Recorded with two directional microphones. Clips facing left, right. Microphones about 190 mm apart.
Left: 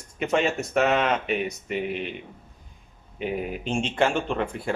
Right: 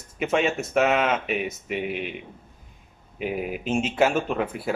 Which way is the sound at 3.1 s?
5° right (ahead or behind).